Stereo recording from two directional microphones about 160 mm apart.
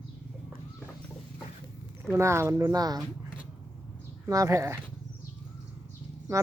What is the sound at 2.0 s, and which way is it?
Speech, 15° right (ahead or behind).